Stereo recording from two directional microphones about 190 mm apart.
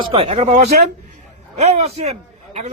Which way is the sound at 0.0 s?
30° right (ahead or behind).